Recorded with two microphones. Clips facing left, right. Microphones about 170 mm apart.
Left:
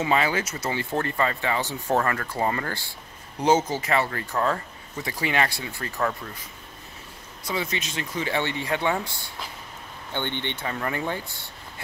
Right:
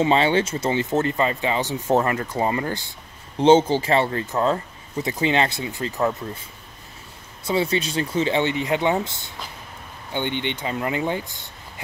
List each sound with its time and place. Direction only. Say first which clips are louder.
0.0 s speech: right 5 dB; 30° right (ahead or behind)
7.4 s speech: right 7 dB; 30° right (ahead or behind)